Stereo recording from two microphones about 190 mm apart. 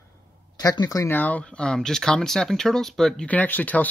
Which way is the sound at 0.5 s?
20° left (ahead or behind).